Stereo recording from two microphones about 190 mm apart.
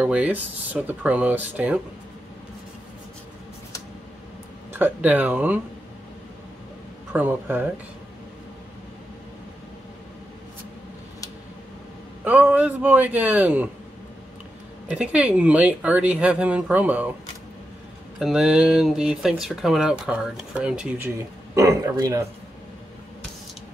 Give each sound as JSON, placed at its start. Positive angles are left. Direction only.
{"t": 0.0, "sound": "speech", "side_deg": -5}
{"t": 4.7, "sound": "speech", "side_deg": -10}
{"t": 7.1, "sound": "speech", "side_deg": -10}
{"t": 12.3, "sound": "speech", "side_deg": -10}
{"t": 14.9, "sound": "speech", "side_deg": -5}
{"t": 18.2, "sound": "speech", "side_deg": -5}